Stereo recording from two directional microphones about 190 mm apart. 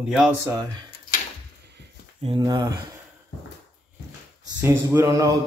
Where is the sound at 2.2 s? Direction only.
25° right (ahead or behind).